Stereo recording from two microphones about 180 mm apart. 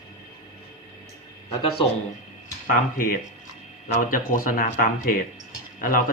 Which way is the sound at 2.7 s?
50° left (ahead or behind).